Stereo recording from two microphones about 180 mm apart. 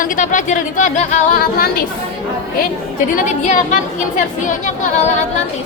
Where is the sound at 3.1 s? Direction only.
45° left (ahead or behind).